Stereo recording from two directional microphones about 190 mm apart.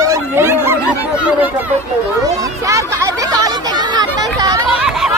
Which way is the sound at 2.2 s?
15° right (ahead or behind).